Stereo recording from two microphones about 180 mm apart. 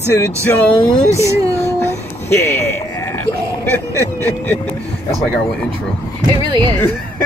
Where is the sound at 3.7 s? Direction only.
10° left (ahead or behind).